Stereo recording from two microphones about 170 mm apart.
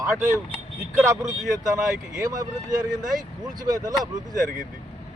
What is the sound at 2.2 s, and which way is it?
Speech, 25° right (ahead or behind).